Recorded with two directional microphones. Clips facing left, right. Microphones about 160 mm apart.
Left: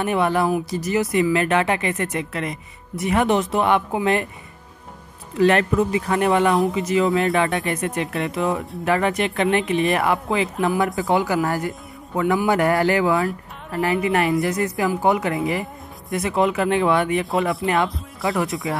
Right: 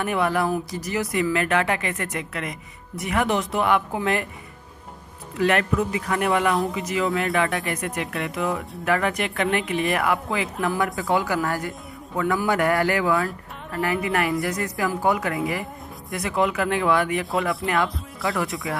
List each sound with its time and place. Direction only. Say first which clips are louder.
0.0 s speech: left 3 dB; 25° left (ahead or behind)
5.4 s speech: left 4 dB; 30° left (ahead or behind)